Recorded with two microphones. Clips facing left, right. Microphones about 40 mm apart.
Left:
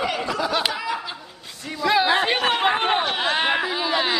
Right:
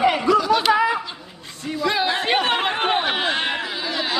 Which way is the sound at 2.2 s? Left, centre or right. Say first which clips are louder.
Even; centre.